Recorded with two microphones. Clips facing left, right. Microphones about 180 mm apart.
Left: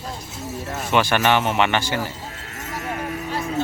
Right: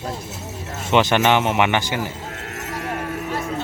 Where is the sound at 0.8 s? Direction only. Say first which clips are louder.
Right 2 dB; 20° right (ahead or behind).